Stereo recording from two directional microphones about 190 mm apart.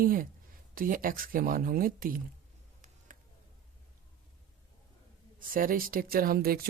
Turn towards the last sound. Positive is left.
turn(degrees=-50)  # may be behind; listen again after turning